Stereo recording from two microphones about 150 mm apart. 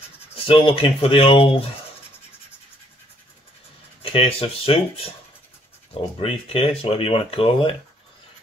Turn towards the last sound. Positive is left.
turn(degrees=40)  # may be behind; listen again after turning